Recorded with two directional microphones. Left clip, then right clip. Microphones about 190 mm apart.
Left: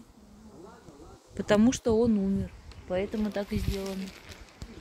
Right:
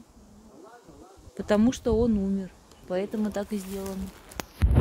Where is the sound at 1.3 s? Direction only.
Centre (ahead or behind).